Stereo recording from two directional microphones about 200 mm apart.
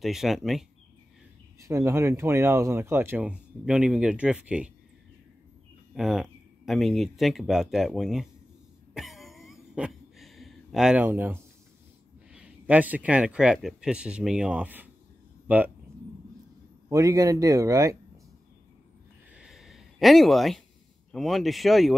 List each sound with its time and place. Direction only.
0.0 s a man's voice: centre (ahead or behind)
1.6 s speech: 15° right (ahead or behind)
5.9 s a man's voice: centre (ahead or behind)
8.9 s a sound: centre (ahead or behind)
12.3 s a man's voice: 5° right (ahead or behind)
16.9 s speech: 15° right (ahead or behind)
19.3 s a sound: centre (ahead or behind)
21.1 s a man's voice: centre (ahead or behind)